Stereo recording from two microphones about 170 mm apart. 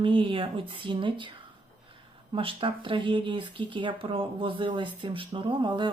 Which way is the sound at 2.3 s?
30° right (ahead or behind).